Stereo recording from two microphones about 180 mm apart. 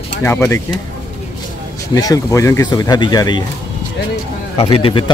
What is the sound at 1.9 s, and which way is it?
Speech, 20° left (ahead or behind).